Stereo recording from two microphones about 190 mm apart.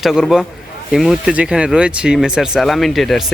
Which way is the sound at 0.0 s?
Centre (ahead or behind).